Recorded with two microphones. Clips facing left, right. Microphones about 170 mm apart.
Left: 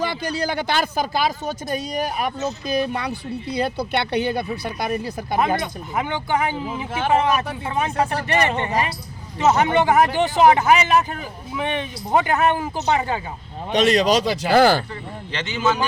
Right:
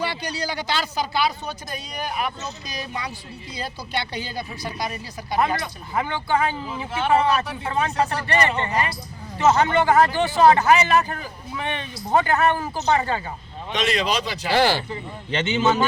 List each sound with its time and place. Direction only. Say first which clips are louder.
0.0 s speech: left 4 dB; 50° left (ahead or behind)
5.5 s speech: left 2 dB; 15° left (ahead or behind)
13.7 s speech: left 7 dB; 45° left (ahead or behind)
15.3 s speech: right 2 dB; 25° right (ahead or behind)